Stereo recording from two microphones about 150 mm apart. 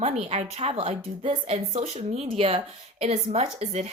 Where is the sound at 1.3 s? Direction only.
55° right (ahead or behind).